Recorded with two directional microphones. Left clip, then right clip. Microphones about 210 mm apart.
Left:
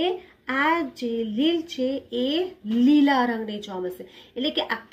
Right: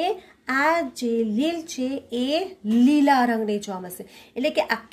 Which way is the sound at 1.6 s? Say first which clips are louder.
Left 2 dB; 45° right (ahead or behind).